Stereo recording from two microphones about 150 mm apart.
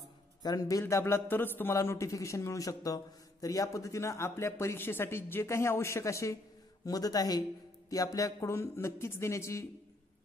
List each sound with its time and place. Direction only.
0.4 s a man's voice: 25° left (ahead or behind)